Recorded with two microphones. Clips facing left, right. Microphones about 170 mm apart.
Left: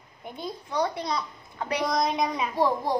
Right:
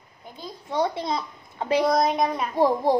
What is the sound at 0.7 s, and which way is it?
A child's voice, 25° right (ahead or behind).